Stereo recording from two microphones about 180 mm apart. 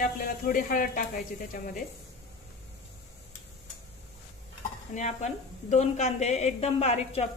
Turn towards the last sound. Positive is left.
turn(degrees=35)  # may be behind; listen again after turning